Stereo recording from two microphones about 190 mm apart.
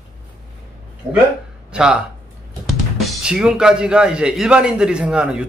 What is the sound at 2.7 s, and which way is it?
Speech, centre (ahead or behind).